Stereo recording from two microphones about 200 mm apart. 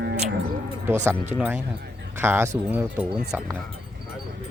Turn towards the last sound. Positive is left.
turn(degrees=-10)  # may be behind; listen again after turning